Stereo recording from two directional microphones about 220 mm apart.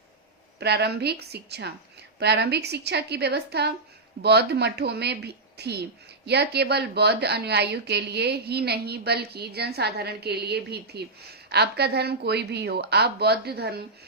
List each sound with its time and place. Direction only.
0.6 s a woman's voice: 50° right (ahead or behind)